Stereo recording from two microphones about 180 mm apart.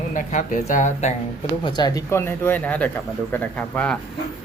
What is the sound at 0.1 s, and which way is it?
Speech, 45° left (ahead or behind).